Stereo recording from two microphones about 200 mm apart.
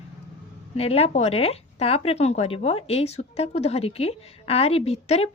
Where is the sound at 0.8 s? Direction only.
30° left (ahead or behind).